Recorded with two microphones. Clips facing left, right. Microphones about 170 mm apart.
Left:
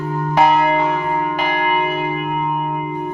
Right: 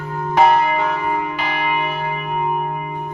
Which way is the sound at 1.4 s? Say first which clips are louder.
Left 3 dB; 45° left (ahead or behind).